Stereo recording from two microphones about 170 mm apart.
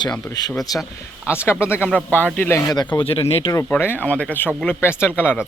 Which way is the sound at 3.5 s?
15° left (ahead or behind).